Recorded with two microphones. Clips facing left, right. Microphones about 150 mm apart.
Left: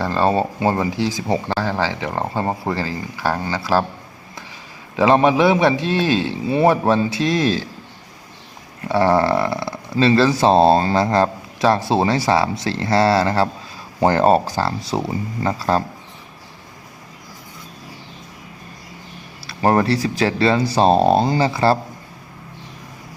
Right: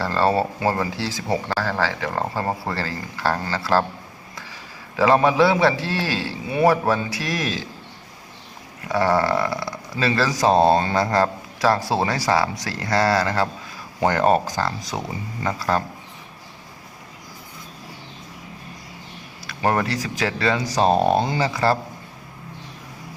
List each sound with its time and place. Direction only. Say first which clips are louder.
0.0 s speech: left 2 dB; 15° left (ahead or behind)
4.9 s speech: left 2 dB; 20° left (ahead or behind)
8.9 s speech: left 4 dB; 25° left (ahead or behind)
19.5 s speech: left 5 dB; 30° left (ahead or behind)